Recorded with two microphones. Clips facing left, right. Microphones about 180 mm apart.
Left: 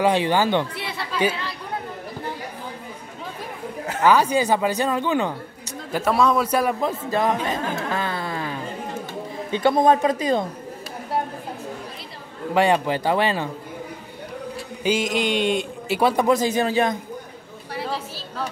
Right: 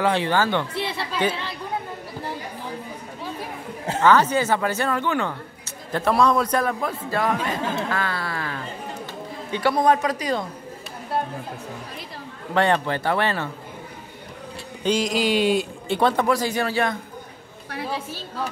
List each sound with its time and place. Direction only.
0.0 s speech: 15° left (ahead or behind)
0.7 s chatter: 25° right (ahead or behind)
4.0 s a man's voice: 10° left (ahead or behind)
12.5 s speech: 10° left (ahead or behind)
14.8 s speech: 5° left (ahead or behind)
15.9 s speech: 10° left (ahead or behind)
16.3 s a man's voice: 20° left (ahead or behind)